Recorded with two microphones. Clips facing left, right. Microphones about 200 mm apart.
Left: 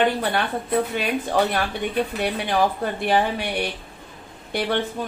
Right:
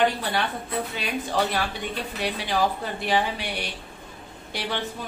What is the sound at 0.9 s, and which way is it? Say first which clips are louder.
A woman's voice: left 5 dB; 50° left (ahead or behind).